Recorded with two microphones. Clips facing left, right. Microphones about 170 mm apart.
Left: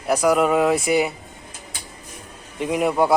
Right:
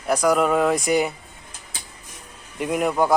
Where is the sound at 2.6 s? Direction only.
Centre (ahead or behind).